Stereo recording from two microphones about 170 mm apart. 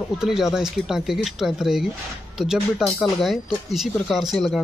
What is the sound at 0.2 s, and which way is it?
Speech, 5° right (ahead or behind).